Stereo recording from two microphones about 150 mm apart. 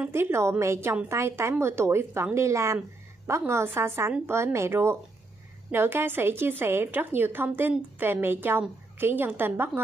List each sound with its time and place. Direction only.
0.0 s a woman's voice: 15° right (ahead or behind)